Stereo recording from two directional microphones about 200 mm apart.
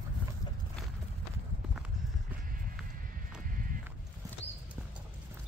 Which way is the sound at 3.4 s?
45° right (ahead or behind).